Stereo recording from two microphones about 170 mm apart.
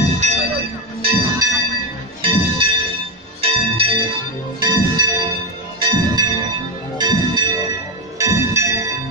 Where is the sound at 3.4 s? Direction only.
35° right (ahead or behind).